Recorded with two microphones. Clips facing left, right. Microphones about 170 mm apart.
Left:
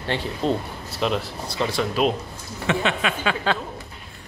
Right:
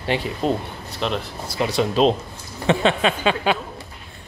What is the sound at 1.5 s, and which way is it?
Speech, 15° right (ahead or behind).